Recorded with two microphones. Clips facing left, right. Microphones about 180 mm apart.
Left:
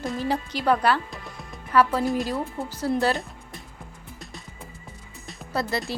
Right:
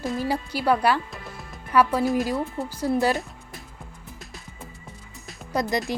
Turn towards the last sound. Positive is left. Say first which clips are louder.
# right 3 dB
turn(degrees=-15)  # may be behind; listen again after turning